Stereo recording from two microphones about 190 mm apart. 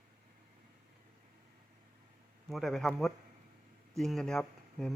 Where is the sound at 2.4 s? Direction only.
Centre (ahead or behind).